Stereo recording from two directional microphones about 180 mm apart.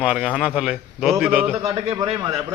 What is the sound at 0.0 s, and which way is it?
A man's voice, 5° right (ahead or behind).